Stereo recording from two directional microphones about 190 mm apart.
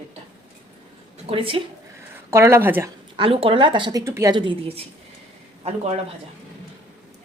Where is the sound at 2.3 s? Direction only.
15° right (ahead or behind).